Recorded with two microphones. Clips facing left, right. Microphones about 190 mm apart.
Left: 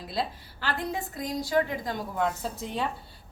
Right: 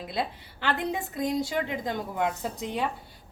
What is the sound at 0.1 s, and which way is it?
Speech, 20° right (ahead or behind).